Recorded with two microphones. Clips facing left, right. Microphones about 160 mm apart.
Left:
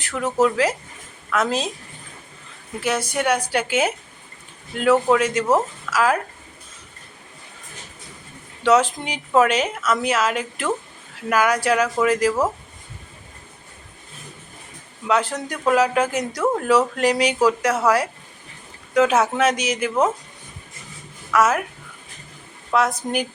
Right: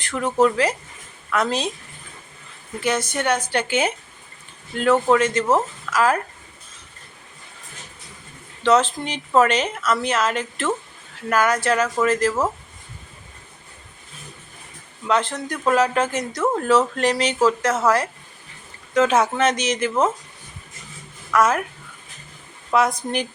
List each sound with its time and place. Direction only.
0.0 s speech: 5° left (ahead or behind)
2.8 s speech: 10° left (ahead or behind)
8.6 s speech: 10° left (ahead or behind)
15.0 s speech: 10° left (ahead or behind)
21.3 s speech: 5° left (ahead or behind)
22.7 s speech: centre (ahead or behind)